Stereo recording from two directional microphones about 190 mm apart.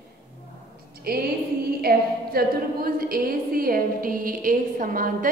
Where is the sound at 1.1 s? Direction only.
55° right (ahead or behind).